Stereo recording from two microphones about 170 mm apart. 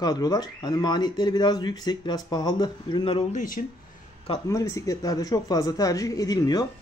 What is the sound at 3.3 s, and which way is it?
Speech, 50° left (ahead or behind).